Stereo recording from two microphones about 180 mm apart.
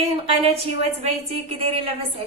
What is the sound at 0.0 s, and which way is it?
A woman's voice, 35° right (ahead or behind).